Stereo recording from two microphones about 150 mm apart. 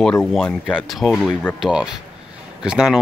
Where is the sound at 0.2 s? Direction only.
Centre (ahead or behind).